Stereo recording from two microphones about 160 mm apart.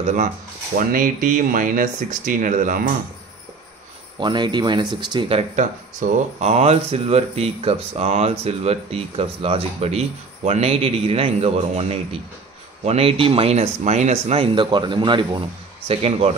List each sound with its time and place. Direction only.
0.0 s speech: 50° right (ahead or behind)
4.2 s speech: 30° right (ahead or behind)